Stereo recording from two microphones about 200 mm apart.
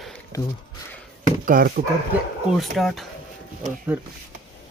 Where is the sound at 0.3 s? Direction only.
15° left (ahead or behind).